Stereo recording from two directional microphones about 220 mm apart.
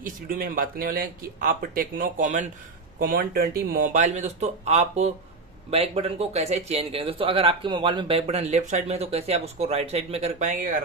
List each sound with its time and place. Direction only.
0.0 s a man's voice: 40° right (ahead or behind)